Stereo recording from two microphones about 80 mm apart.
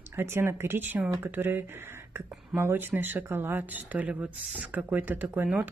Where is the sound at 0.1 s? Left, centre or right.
Right.